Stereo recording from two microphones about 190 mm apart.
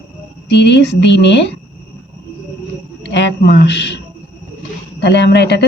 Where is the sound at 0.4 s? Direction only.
65° left (ahead or behind).